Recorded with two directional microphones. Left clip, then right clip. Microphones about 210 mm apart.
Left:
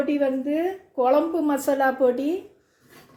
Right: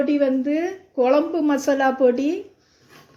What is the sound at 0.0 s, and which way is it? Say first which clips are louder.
A woman's voice: right 3 dB; 40° right (ahead or behind).